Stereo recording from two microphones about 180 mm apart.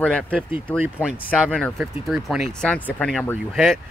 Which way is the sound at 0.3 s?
10° right (ahead or behind).